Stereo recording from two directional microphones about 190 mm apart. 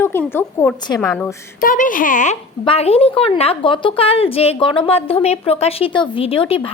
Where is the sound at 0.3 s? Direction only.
5° left (ahead or behind).